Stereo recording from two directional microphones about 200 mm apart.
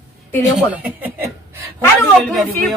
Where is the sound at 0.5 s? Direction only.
10° right (ahead or behind).